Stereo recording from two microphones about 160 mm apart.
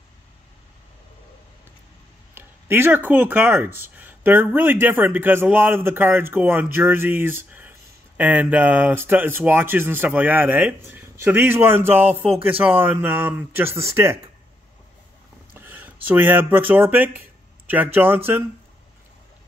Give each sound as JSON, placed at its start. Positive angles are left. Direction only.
{"t": 2.3, "sound": "speech", "side_deg": -15}
{"t": 15.5, "sound": "a sound", "side_deg": -10}
{"t": 17.9, "sound": "speech", "side_deg": -15}